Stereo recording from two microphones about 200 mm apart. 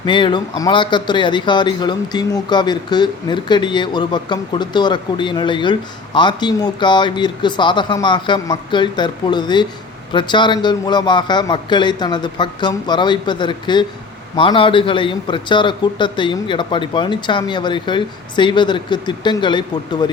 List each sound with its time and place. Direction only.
0.0 s speech: 25° left (ahead or behind)